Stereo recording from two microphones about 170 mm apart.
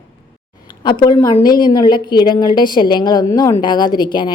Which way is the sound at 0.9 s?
25° left (ahead or behind).